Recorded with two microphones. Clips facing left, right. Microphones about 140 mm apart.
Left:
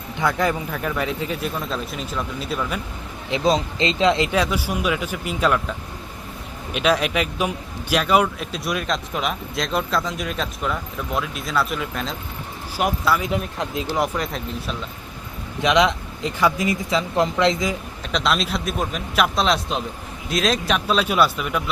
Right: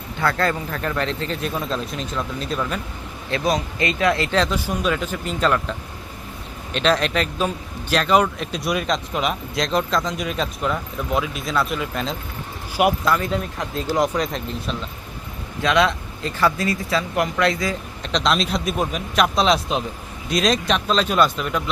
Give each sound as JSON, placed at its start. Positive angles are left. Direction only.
{"t": 0.2, "sound": "a man's voice", "side_deg": 15}
{"t": 3.2, "sound": "a man's voice", "side_deg": 20}
{"t": 6.7, "sound": "speech", "side_deg": 10}
{"t": 13.1, "sound": "a man's voice", "side_deg": 10}
{"t": 13.9, "sound": "speech", "side_deg": 0}
{"t": 15.6, "sound": "speech", "side_deg": 20}
{"t": 18.0, "sound": "speech", "side_deg": 5}